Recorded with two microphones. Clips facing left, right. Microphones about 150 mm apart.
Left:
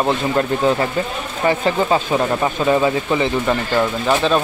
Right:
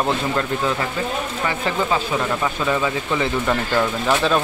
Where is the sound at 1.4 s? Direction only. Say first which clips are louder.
Left 7 dB; 30° left (ahead or behind).